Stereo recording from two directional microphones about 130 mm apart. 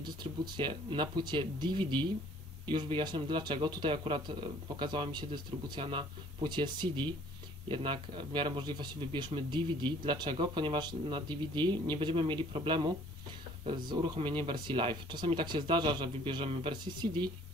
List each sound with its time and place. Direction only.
0.0 s speech: 35° right (ahead or behind)